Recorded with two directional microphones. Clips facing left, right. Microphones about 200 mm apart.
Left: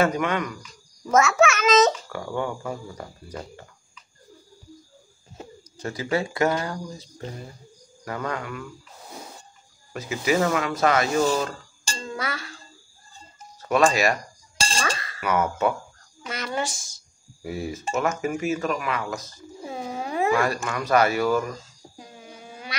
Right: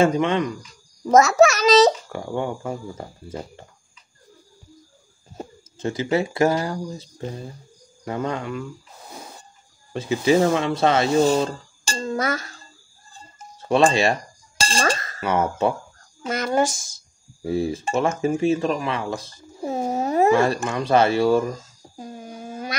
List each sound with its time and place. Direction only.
0.0 s a child's voice: 25° right (ahead or behind)
5.8 s a child's voice: 25° right (ahead or behind)
8.0 s a child's voice: 25° right (ahead or behind)
9.9 s a child's voice: 30° right (ahead or behind)
11.9 s a child's voice: 45° right (ahead or behind)
13.6 s speech: 30° right (ahead or behind)
14.8 s chink: 45° right (ahead or behind)
15.1 s a child's voice: 30° right (ahead or behind)
16.3 s a child's voice: 45° right (ahead or behind)
17.5 s a child's voice: 30° right (ahead or behind)
19.6 s a sound: 45° right (ahead or behind)
20.3 s a child's voice: 25° right (ahead or behind)
21.9 s a sound: 40° right (ahead or behind)